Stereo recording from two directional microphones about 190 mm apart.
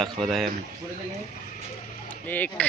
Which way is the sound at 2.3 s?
10° left (ahead or behind).